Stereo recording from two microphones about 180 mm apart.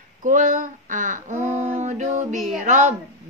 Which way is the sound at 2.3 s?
Centre (ahead or behind).